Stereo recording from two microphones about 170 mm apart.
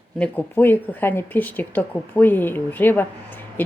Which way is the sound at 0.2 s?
10° left (ahead or behind).